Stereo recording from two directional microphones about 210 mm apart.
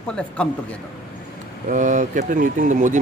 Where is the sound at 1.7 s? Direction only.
35° right (ahead or behind).